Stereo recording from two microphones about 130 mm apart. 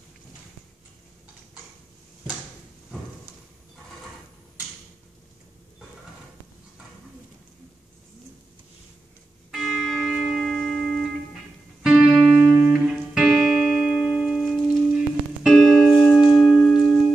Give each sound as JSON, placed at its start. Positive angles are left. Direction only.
{"t": 9.5, "sound": "music", "side_deg": -5}